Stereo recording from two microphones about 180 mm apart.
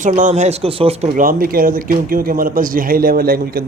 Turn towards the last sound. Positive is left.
turn(degrees=-55)  # may be behind; listen again after turning